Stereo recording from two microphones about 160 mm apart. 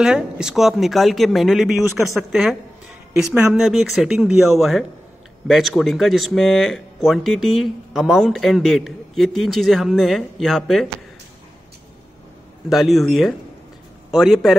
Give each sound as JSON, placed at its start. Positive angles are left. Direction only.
{"t": 0.0, "sound": "speech", "side_deg": -5}
{"t": 12.6, "sound": "speech", "side_deg": 0}